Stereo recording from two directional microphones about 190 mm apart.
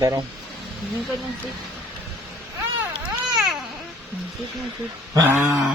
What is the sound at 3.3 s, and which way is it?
Baby cry, 5° right (ahead or behind).